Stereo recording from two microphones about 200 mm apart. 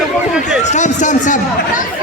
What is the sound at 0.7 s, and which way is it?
Speech, 35° left (ahead or behind).